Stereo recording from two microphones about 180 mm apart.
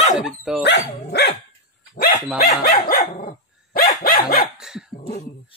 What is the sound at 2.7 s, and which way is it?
Dog, 55° left (ahead or behind).